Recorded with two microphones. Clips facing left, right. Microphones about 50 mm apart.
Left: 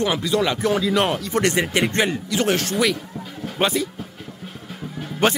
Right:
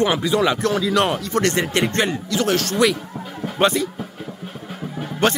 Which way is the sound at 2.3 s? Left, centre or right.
Left.